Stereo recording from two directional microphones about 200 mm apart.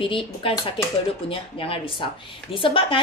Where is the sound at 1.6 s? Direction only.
25° left (ahead or behind).